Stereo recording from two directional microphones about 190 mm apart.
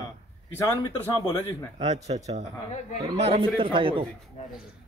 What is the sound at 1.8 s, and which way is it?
A man's voice, 35° right (ahead or behind).